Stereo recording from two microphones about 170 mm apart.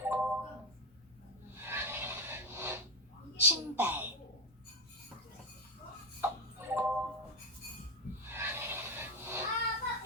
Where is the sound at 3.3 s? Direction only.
10° right (ahead or behind).